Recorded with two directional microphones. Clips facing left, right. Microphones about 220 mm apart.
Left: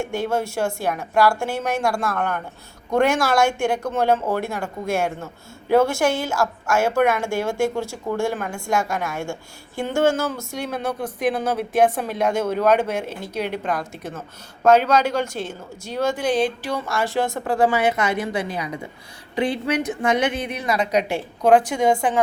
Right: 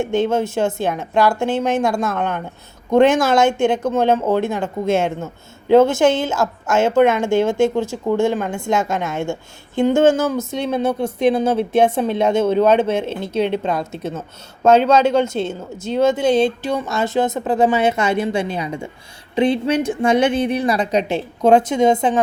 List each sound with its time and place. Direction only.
0.0 s speech: 20° right (ahead or behind)